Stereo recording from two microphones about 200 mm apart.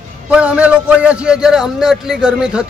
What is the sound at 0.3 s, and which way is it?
A man's voice, 5° right (ahead or behind).